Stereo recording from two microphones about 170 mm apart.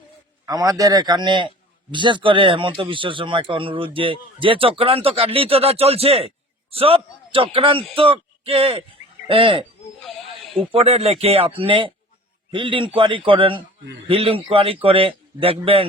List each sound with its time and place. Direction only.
0.4 s a man's voice: 20° right (ahead or behind)